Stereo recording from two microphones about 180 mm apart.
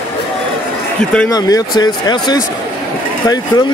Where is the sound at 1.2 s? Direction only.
20° left (ahead or behind).